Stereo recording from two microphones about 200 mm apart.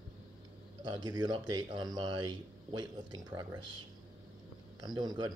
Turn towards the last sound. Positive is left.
turn(degrees=-20)  # may be behind; listen again after turning